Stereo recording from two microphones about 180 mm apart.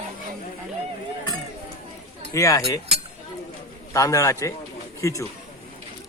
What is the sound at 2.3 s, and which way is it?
Speech, 15° left (ahead or behind).